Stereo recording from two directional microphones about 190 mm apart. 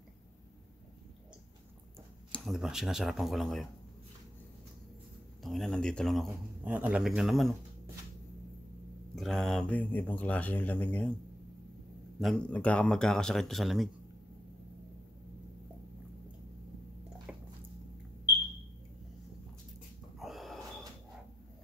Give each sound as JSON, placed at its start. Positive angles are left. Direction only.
{"t": 2.3, "sound": "speech", "side_deg": 0}
{"t": 5.4, "sound": "speech", "side_deg": 0}
{"t": 9.1, "sound": "speech", "side_deg": 0}
{"t": 12.2, "sound": "speech", "side_deg": 5}
{"t": 20.2, "sound": "snort", "side_deg": 0}